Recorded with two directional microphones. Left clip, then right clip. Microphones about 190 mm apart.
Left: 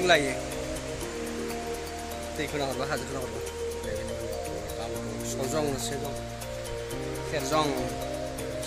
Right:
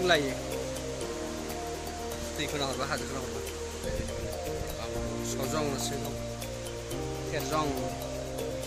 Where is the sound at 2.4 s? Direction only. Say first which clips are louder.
Left 2 dB; 15° left (ahead or behind).